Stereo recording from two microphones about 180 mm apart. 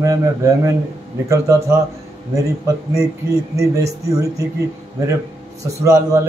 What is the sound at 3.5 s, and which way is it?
Speech, 15° right (ahead or behind).